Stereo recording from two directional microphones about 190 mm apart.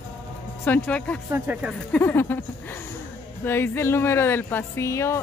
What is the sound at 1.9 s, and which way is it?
Speech, 10° left (ahead or behind).